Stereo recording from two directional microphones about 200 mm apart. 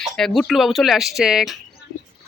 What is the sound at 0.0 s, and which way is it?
A man's voice, centre (ahead or behind).